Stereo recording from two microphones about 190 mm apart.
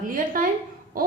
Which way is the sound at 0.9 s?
50° right (ahead or behind).